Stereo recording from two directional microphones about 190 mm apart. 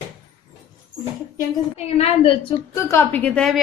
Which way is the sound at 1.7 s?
30° left (ahead or behind).